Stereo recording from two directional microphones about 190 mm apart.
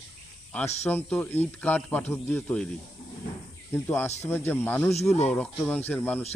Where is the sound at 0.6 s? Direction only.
35° left (ahead or behind).